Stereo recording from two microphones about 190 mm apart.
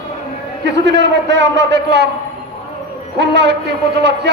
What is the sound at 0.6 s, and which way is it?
A man's voice, 65° right (ahead or behind).